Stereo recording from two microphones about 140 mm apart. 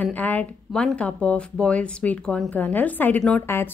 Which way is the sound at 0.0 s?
10° left (ahead or behind).